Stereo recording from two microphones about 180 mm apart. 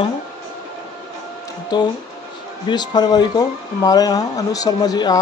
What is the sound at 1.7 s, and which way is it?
Speech, 25° left (ahead or behind).